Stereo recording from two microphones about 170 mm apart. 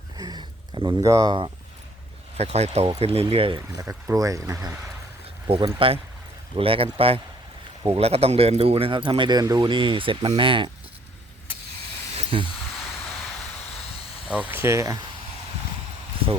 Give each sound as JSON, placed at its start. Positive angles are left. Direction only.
{"t": 0.2, "sound": "a sound", "side_deg": -25}
{"t": 2.4, "sound": "speech", "side_deg": -40}
{"t": 3.8, "sound": "speech", "side_deg": -20}
{"t": 5.5, "sound": "speech", "side_deg": -30}
{"t": 12.1, "sound": "a sound", "side_deg": -30}
{"t": 14.3, "sound": "speech", "side_deg": -10}